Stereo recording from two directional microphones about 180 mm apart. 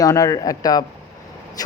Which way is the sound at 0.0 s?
20° left (ahead or behind).